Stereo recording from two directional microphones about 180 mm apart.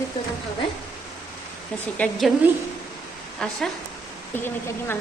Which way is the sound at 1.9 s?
10° left (ahead or behind).